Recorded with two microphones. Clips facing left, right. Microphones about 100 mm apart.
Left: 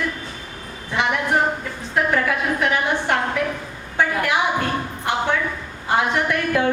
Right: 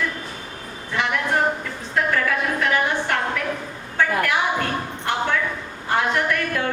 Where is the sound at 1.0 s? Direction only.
20° left (ahead or behind).